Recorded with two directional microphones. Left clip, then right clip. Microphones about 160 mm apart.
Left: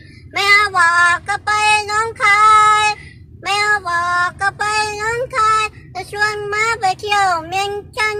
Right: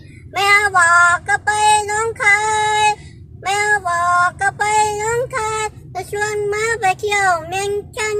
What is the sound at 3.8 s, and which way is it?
Music, 10° right (ahead or behind).